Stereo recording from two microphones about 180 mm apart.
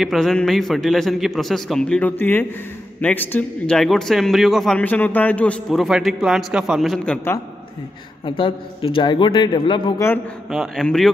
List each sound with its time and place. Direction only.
0.0 s a man's voice: centre (ahead or behind)
8.3 s speech: 30° left (ahead or behind)
10.5 s a man's voice: centre (ahead or behind)